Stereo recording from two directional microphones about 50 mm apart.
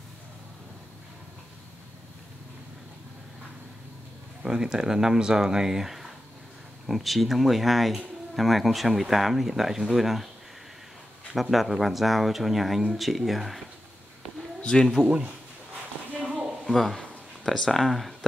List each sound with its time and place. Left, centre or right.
4.4 s speech: centre
11.5 s speech: centre
14.6 s speech: centre
16.6 s speech: centre